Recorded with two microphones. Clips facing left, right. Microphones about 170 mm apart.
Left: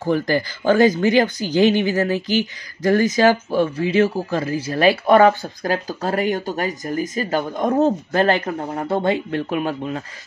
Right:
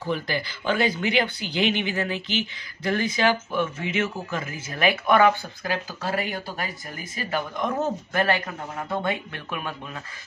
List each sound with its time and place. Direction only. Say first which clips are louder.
0.0 s speech: left 8 dB; 45° left (ahead or behind)